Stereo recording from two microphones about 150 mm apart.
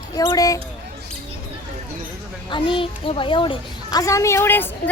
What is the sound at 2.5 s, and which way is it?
A child's voice, 35° left (ahead or behind).